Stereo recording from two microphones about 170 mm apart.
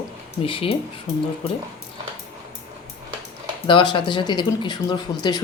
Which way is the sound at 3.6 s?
30° left (ahead or behind).